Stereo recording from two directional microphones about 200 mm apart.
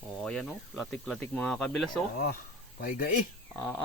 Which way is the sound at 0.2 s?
Centre (ahead or behind).